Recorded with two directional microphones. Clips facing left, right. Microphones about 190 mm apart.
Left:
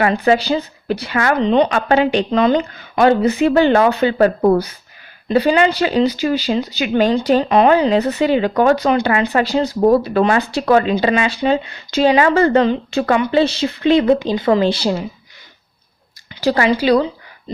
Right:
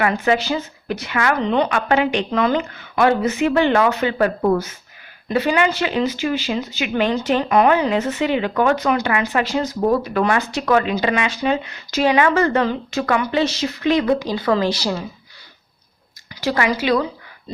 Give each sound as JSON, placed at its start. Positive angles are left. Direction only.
{"t": 0.0, "sound": "speech", "side_deg": 30}
{"t": 1.4, "sound": "speech", "side_deg": 20}
{"t": 1.6, "sound": "speech", "side_deg": 30}
{"t": 16.3, "sound": "a woman's voice", "side_deg": 35}